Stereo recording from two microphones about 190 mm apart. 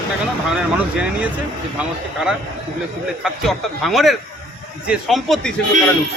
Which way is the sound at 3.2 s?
Centre (ahead or behind).